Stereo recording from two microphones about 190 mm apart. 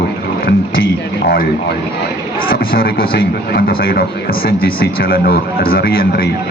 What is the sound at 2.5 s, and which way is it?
A man's voice, 50° left (ahead or behind).